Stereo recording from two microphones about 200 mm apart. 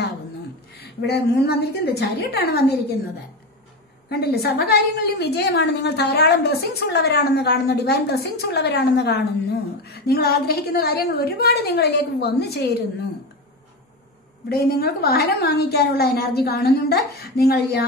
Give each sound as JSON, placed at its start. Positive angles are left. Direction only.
{"t": 0.7, "sound": "a woman's voice", "side_deg": 55}
{"t": 4.1, "sound": "a woman's voice", "side_deg": 55}
{"t": 14.5, "sound": "a woman's voice", "side_deg": 50}